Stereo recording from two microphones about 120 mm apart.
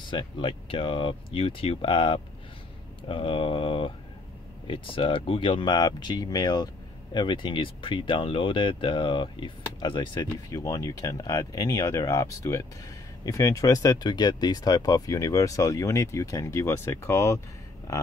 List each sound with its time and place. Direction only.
0.1 s speech: 45° left (ahead or behind)
10.3 s speech: 25° left (ahead or behind)